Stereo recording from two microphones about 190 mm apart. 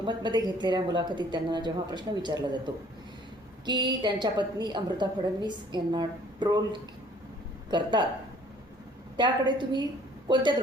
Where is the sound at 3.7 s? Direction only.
25° right (ahead or behind).